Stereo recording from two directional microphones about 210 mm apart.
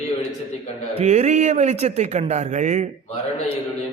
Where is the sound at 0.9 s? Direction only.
30° right (ahead or behind).